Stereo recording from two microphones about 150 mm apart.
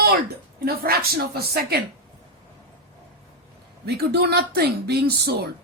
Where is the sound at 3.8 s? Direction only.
90° right.